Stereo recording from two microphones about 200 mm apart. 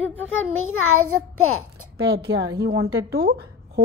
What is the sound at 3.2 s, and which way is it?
Speech, 50° right (ahead or behind).